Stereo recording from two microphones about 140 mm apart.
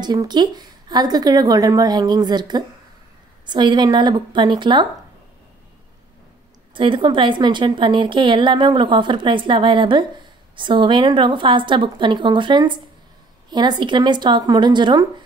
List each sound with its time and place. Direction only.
0.0 s a woman's voice: 30° right (ahead or behind)
6.7 s a woman's voice: 35° right (ahead or behind)